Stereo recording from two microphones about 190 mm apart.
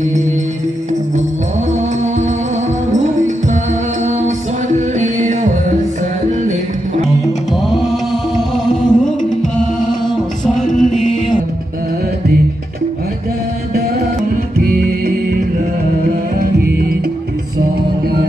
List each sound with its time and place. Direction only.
4.7 s music: 40° right (ahead or behind)
8.6 s music: 5° left (ahead or behind)
10.5 s music: 40° left (ahead or behind)
14.7 s music: 50° right (ahead or behind)